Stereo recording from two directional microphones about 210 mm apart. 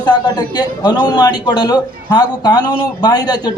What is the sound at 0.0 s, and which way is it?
A man's voice, 20° left (ahead or behind).